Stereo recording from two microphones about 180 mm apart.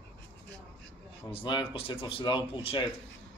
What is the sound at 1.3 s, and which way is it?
A man's voice, 25° left (ahead or behind).